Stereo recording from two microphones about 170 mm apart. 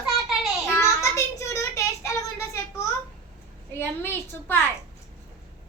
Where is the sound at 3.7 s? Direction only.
10° left (ahead or behind).